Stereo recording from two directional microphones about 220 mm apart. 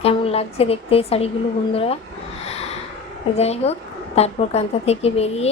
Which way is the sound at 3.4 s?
30° left (ahead or behind).